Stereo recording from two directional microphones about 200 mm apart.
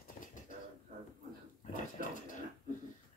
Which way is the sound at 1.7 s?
40° left (ahead or behind).